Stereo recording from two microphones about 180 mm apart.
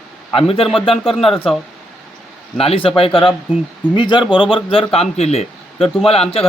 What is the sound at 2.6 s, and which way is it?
Speech, 30° left (ahead or behind).